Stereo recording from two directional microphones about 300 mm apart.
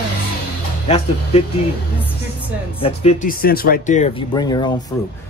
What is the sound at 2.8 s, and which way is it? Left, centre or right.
Speech, left.